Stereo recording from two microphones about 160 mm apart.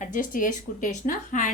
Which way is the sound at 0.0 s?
55° left (ahead or behind).